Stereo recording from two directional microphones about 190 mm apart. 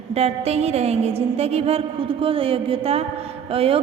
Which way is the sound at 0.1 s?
35° right (ahead or behind).